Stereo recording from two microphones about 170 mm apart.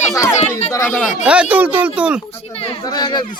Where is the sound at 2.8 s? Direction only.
25° left (ahead or behind).